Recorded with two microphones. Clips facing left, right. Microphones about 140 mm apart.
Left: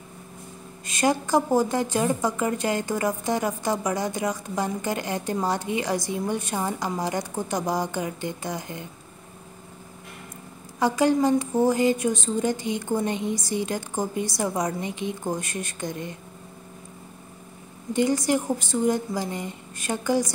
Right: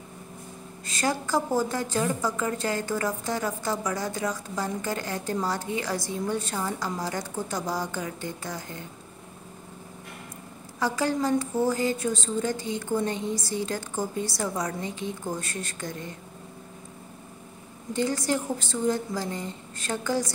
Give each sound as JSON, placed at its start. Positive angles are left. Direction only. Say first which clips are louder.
{"t": 0.8, "sound": "a woman's voice", "louder": "left 5 dB", "side_deg": 20}
{"t": 10.8, "sound": "a woman's voice", "louder": "left 5 dB", "side_deg": 20}
{"t": 17.9, "sound": "a woman's voice", "louder": "left 4 dB", "side_deg": 15}